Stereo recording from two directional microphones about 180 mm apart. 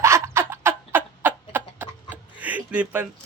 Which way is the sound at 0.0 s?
15° right (ahead or behind).